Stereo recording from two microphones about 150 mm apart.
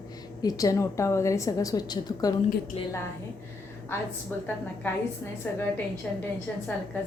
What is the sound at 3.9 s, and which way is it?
Speech, 15° left (ahead or behind).